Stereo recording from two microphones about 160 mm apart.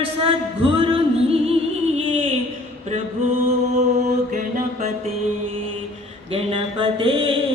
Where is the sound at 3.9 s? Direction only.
50° right (ahead or behind).